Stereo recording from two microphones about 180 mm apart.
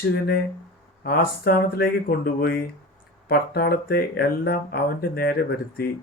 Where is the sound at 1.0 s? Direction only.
55° left (ahead or behind).